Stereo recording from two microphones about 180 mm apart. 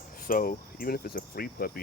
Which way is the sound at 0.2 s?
50° left (ahead or behind).